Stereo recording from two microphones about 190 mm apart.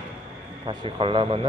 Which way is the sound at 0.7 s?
30° right (ahead or behind).